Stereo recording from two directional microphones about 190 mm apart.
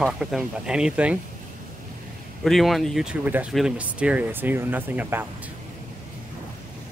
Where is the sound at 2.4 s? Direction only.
Centre (ahead or behind).